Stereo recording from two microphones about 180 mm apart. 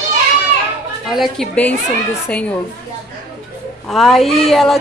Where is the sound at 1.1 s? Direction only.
Centre (ahead or behind).